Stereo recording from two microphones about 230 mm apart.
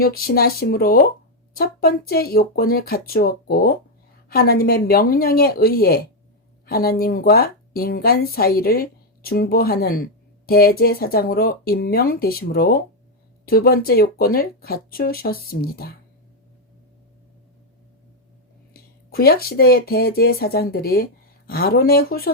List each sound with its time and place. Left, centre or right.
0.0 s a woman's voice: left
18.7 s speech: left